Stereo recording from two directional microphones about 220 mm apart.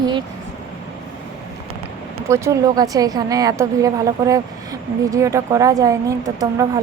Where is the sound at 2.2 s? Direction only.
15° right (ahead or behind).